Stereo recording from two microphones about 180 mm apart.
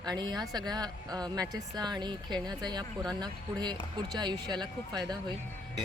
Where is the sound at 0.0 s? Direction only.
25° right (ahead or behind).